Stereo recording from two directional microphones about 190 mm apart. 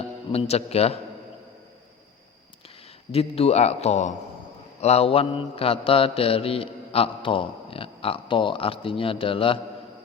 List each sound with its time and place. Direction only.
0.3 s a man's voice: 30° left (ahead or behind)
3.1 s a man's voice: 30° left (ahead or behind)
4.8 s mantra: 35° left (ahead or behind)